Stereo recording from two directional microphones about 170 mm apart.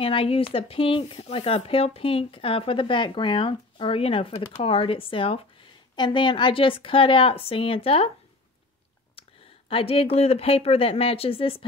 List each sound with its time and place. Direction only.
0.0 s speech: 30° left (ahead or behind)
9.7 s speech: 35° left (ahead or behind)